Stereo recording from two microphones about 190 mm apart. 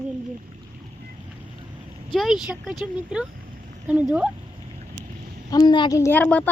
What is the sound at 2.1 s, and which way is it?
A woman's voice, centre (ahead or behind).